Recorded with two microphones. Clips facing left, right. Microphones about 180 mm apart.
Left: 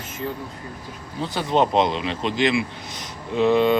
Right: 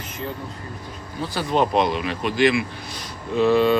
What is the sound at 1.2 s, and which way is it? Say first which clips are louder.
Speech: left 1 dB; 20° left (ahead or behind).